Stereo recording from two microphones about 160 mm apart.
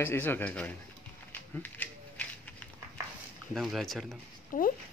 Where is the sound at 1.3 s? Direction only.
10° left (ahead or behind).